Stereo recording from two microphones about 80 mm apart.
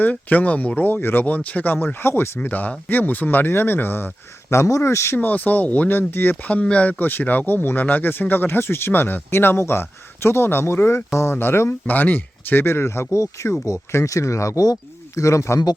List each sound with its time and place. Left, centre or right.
0.0 s speech: left
5.1 s speech: left